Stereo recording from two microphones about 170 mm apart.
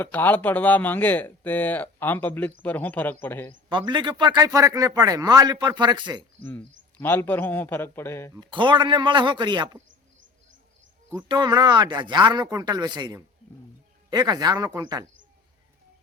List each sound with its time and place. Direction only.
0.0 s speech: 10° left (ahead or behind)
3.7 s speech: 25° right (ahead or behind)
7.0 s speech: 10° left (ahead or behind)
8.4 s speech: 30° right (ahead or behind)
11.1 s speech: 25° right (ahead or behind)